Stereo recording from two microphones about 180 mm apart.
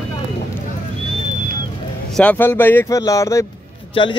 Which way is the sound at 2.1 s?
10° left (ahead or behind).